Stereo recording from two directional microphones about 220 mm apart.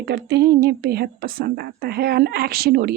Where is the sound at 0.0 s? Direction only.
50° right (ahead or behind).